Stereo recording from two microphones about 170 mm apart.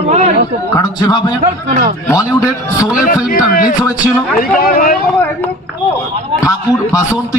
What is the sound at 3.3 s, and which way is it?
A man's voice, 55° left (ahead or behind).